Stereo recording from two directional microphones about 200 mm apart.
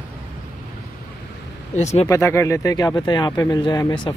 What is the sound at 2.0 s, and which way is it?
Speech, 15° left (ahead or behind).